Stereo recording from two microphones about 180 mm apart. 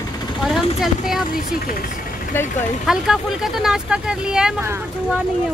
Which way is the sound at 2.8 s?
Centre (ahead or behind).